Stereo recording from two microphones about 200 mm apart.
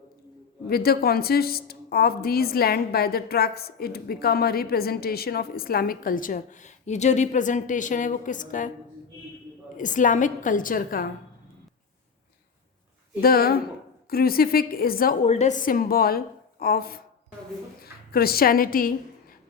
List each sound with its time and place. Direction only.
0.7 s a woman's voice: 50° left (ahead or behind)
9.7 s a woman's voice: 40° left (ahead or behind)
13.2 s a woman's voice: 50° left (ahead or behind)
15.3 s a woman's voice: 35° left (ahead or behind)
18.1 s a woman's voice: 50° left (ahead or behind)